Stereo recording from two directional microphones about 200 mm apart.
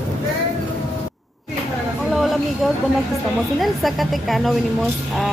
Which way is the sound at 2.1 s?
Centre (ahead or behind).